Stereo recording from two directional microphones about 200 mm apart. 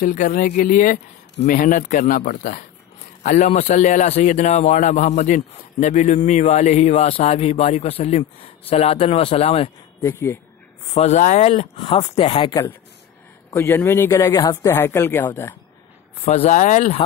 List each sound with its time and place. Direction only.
0.0 s speech: 40° left (ahead or behind)
10.0 s speech: 10° left (ahead or behind)
11.0 s speech: 35° left (ahead or behind); by 15.5 s 10° left (ahead or behind)
16.3 s speech: 35° left (ahead or behind)